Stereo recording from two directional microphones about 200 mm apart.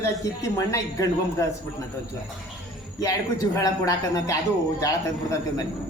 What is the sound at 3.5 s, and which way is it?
Speech, 15° left (ahead or behind).